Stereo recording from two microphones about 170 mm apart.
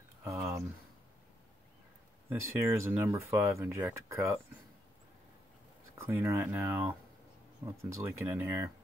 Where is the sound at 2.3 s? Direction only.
15° right (ahead or behind).